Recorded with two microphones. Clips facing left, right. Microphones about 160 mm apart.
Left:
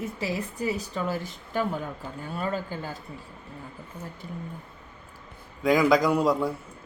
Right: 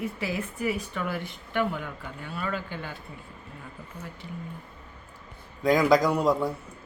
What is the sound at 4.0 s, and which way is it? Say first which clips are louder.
Speech: left 2 dB; 25° left (ahead or behind).